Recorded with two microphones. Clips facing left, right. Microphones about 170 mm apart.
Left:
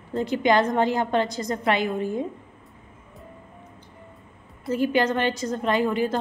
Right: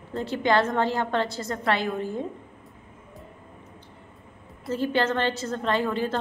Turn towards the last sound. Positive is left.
turn(degrees=15)  # may be behind; listen again after turning